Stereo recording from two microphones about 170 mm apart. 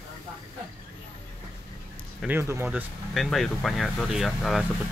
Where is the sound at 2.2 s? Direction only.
15° right (ahead or behind).